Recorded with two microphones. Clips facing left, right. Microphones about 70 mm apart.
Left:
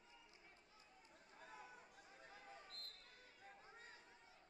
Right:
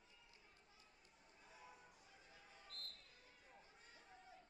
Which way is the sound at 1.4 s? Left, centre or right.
Left.